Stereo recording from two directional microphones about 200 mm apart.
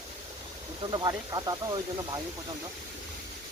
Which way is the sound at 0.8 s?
20° right (ahead or behind).